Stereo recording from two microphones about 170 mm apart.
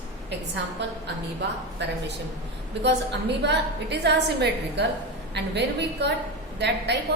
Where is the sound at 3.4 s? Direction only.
85° right.